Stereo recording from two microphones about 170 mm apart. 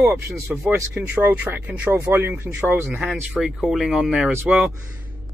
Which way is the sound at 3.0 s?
Centre (ahead or behind).